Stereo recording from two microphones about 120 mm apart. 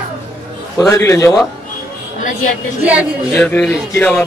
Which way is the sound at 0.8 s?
25° left (ahead or behind).